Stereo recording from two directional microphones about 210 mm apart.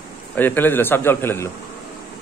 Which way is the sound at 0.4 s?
10° left (ahead or behind).